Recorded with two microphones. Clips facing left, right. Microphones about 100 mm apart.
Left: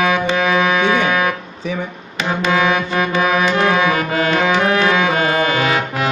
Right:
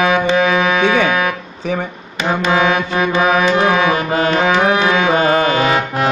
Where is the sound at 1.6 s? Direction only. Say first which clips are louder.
Right 3 dB; 50° right (ahead or behind).